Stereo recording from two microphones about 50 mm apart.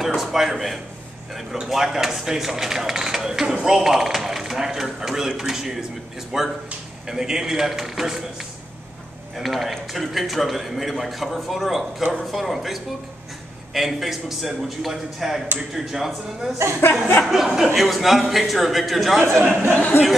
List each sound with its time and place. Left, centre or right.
0.0 s a man's voice: centre
16.8 s chuckle: left
17.2 s a man's voice: centre
19.9 s chuckle: left